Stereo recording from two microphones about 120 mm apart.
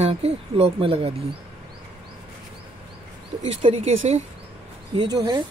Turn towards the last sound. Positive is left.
turn(degrees=-35)  # may be behind; listen again after turning